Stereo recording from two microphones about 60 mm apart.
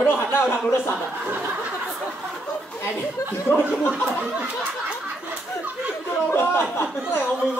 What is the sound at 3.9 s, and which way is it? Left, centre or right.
Speech, centre.